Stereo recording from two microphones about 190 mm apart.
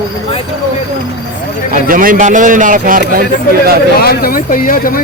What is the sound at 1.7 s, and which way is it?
A man's voice, 45° right (ahead or behind).